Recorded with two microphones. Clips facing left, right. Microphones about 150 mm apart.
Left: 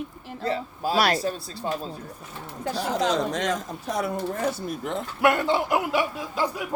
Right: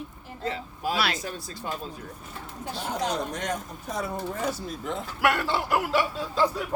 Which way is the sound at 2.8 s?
90° left.